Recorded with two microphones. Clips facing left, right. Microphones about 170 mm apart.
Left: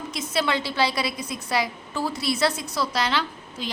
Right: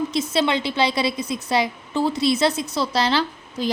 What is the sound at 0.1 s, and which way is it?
A woman's voice, 25° right (ahead or behind).